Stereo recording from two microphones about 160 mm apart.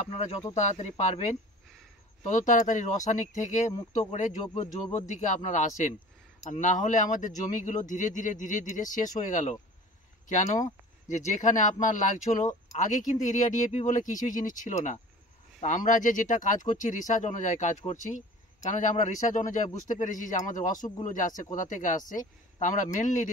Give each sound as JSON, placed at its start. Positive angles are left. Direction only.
{"t": 0.6, "sound": "speech", "side_deg": 45}